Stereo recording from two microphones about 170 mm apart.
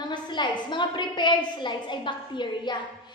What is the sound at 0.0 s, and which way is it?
A woman's voice, 25° left (ahead or behind).